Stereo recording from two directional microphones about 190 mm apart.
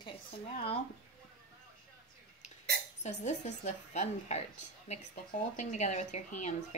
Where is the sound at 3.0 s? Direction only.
35° left (ahead or behind).